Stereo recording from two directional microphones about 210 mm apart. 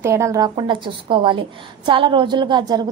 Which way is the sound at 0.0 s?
15° right (ahead or behind).